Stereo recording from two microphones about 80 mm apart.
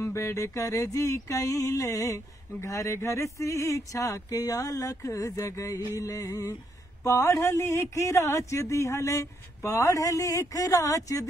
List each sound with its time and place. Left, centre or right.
0.0 s mantra: left